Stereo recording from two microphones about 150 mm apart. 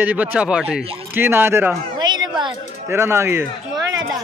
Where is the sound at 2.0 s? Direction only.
30° right (ahead or behind).